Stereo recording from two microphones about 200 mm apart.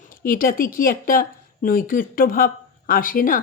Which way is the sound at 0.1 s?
45° left (ahead or behind).